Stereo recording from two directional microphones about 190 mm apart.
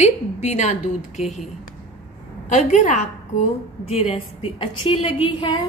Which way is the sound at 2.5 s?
40° left (ahead or behind).